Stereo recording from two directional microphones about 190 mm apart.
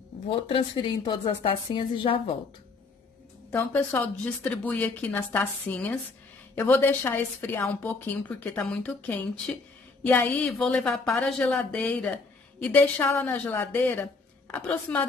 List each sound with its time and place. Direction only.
0.3 s a woman's voice: 25° left (ahead or behind)
3.4 s a woman's voice: 10° left (ahead or behind)